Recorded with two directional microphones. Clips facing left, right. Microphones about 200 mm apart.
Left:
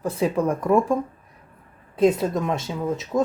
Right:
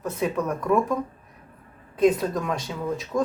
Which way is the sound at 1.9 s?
25° left (ahead or behind).